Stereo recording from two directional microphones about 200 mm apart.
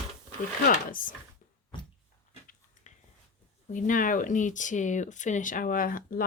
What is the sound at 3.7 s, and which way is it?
Speech, 40° left (ahead or behind).